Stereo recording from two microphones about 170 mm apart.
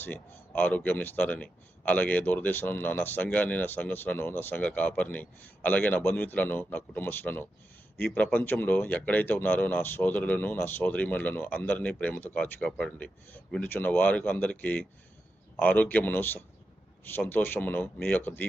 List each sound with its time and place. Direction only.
0.0 s speech: 10° left (ahead or behind)